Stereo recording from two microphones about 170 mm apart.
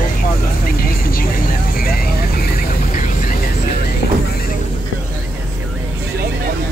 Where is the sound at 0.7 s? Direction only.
60° left (ahead or behind).